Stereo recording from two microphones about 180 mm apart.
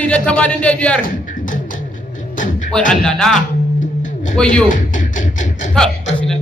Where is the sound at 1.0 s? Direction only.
45° left (ahead or behind).